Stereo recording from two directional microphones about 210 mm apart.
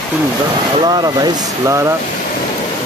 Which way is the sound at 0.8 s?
20° right (ahead or behind).